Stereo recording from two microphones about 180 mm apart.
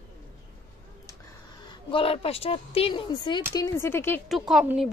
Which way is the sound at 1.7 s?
30° left (ahead or behind).